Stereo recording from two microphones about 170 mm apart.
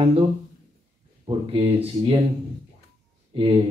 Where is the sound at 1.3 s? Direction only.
30° right (ahead or behind).